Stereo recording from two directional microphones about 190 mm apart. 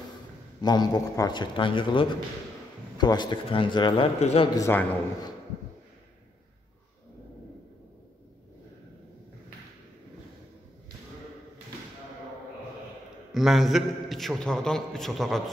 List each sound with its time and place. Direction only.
0.6 s speech: 20° left (ahead or behind)
4.6 s a man's voice: 15° left (ahead or behind)
13.3 s a man's voice: centre (ahead or behind)